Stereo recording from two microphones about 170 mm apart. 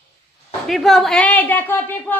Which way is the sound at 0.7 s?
Centre (ahead or behind).